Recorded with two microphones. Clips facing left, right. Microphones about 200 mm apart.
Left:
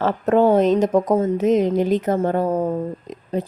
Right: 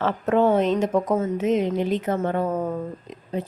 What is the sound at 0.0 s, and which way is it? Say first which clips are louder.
Speech: left 4 dB; 40° left (ahead or behind).